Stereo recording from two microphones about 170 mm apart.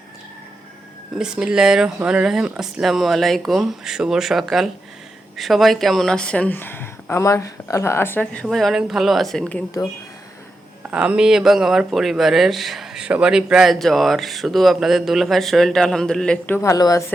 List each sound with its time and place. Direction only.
1.1 s speech: 5° right (ahead or behind)
10.9 s speech: 5° right (ahead or behind)
16.6 s a woman's voice: 20° left (ahead or behind)